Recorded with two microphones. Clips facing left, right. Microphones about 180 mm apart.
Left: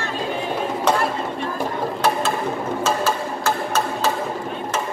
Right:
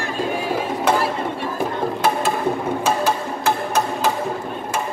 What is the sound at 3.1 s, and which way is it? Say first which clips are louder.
Music: right 1 dB; 15° right (ahead or behind).